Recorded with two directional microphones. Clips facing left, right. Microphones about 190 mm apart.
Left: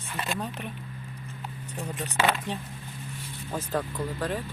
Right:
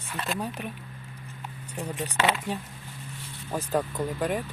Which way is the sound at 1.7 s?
15° right (ahead or behind).